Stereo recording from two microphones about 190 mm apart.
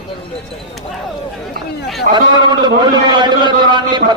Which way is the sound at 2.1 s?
45° right (ahead or behind).